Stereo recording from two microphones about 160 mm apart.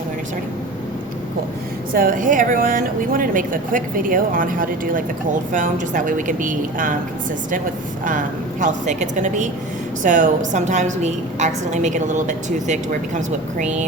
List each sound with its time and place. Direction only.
1.9 s a woman's voice: 65° right (ahead or behind)
8.6 s a woman's voice: 50° right (ahead or behind)